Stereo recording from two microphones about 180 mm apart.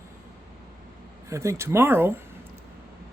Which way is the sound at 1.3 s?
15° right (ahead or behind).